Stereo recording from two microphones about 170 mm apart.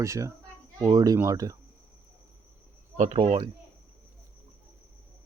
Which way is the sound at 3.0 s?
40° right (ahead or behind).